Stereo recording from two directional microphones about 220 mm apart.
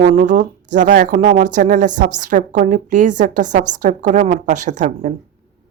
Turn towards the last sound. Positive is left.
turn(degrees=-35)  # may be behind; listen again after turning